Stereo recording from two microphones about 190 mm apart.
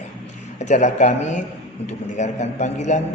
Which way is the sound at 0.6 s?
40° left (ahead or behind).